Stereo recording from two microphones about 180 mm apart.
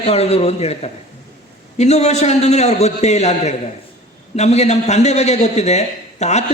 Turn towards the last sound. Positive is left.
turn(degrees=40)  # may be behind; listen again after turning